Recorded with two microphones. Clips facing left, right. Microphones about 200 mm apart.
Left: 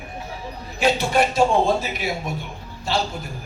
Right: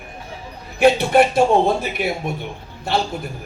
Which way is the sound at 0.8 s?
60° right (ahead or behind).